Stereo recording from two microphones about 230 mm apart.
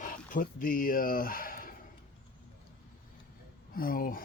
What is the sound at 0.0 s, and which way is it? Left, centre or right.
Speech, left.